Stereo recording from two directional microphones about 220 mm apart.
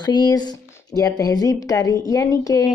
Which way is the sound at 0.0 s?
20° left (ahead or behind).